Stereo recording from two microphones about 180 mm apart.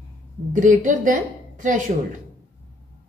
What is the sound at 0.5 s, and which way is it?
A woman's voice, 45° right (ahead or behind).